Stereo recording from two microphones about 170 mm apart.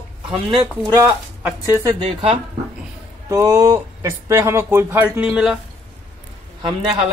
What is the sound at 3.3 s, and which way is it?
Speech, 15° right (ahead or behind).